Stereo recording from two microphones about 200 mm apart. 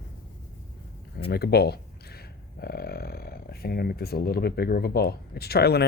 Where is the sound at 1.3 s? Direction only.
50° left (ahead or behind).